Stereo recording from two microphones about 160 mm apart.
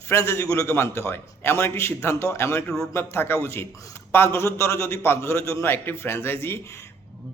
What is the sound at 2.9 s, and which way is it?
A man's voice, 15° left (ahead or behind).